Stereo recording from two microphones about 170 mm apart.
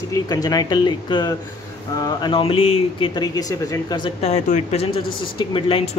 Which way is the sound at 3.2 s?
20° left (ahead or behind).